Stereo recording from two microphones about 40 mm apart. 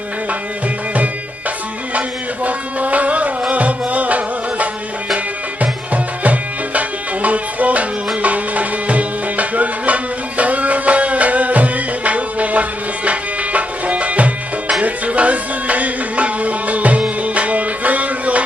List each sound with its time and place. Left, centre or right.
1.5 s music: right